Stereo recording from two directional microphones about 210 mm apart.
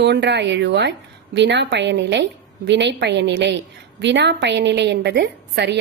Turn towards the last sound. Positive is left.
turn(degrees=-55)  # may be behind; listen again after turning